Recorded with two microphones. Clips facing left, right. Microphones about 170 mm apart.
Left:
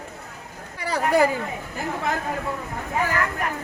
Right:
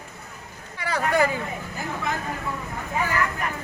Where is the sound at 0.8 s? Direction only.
35° left (ahead or behind).